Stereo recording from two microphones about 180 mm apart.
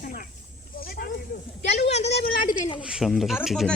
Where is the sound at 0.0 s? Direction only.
55° left (ahead or behind).